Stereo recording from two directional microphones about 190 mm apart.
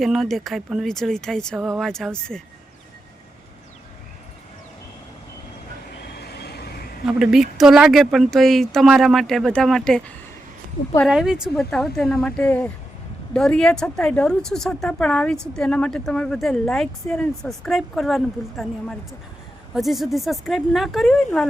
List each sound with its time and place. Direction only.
0.0 s speech: centre (ahead or behind)
6.1 s vehicle: 60° left (ahead or behind)
7.0 s speech: 5° right (ahead or behind)
11.1 s speech: 5° right (ahead or behind)